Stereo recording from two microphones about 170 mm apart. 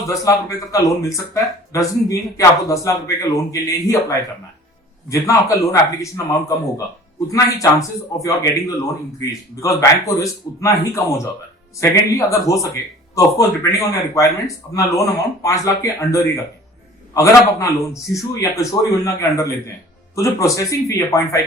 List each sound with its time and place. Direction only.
0.1 s speech: 20° left (ahead or behind)
5.0 s speech: 20° left (ahead or behind)
10.2 s a man's voice: 20° left (ahead or behind)